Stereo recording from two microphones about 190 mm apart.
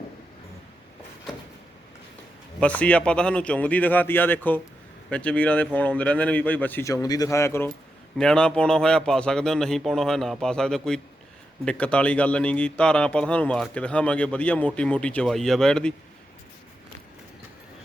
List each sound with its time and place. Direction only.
2.6 s a man's voice: 5° left (ahead or behind)